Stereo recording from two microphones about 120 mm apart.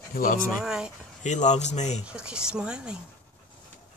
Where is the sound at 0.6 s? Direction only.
5° right (ahead or behind).